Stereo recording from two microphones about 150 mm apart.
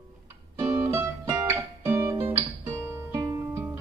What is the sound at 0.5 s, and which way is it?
Music, 20° right (ahead or behind).